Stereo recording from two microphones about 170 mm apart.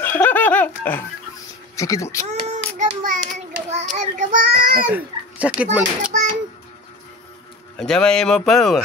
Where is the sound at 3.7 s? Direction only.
40° right (ahead or behind).